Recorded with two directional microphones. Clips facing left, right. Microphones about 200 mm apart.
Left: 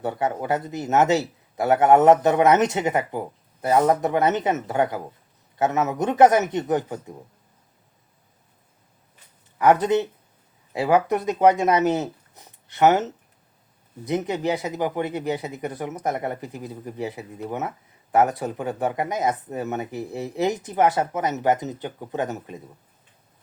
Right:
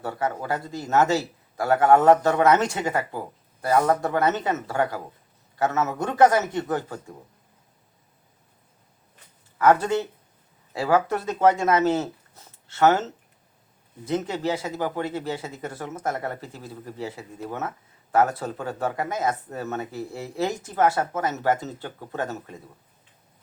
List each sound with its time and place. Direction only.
0.0 s a man's voice: 20° left (ahead or behind)
9.6 s speech: 20° left (ahead or behind)